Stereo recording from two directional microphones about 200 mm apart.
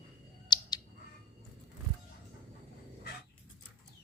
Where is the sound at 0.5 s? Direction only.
20° left (ahead or behind).